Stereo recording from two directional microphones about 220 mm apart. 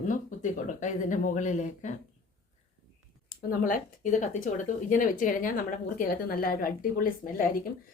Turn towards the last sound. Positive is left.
turn(degrees=40)  # may be behind; listen again after turning